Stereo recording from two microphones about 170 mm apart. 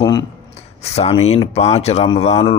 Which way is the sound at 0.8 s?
40° left (ahead or behind).